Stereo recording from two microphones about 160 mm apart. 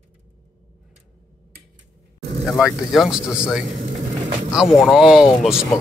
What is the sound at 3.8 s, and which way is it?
Speech, 50° right (ahead or behind).